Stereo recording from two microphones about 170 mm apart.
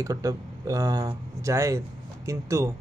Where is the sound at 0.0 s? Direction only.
20° right (ahead or behind).